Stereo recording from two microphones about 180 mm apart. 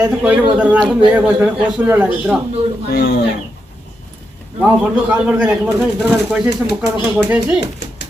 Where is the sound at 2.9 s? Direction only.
65° left (ahead or behind).